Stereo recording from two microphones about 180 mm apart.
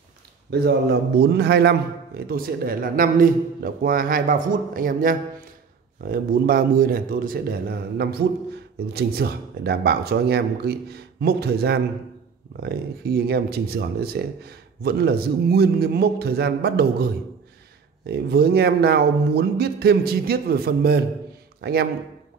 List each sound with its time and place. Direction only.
0.5 s a man's voice: 65° right (ahead or behind)